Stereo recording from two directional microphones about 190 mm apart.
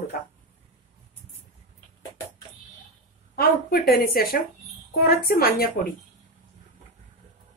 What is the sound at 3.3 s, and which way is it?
Speech, 50° left (ahead or behind).